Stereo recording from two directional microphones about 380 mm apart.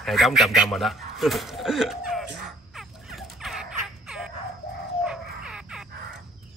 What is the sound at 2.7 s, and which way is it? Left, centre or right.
Fowl, centre.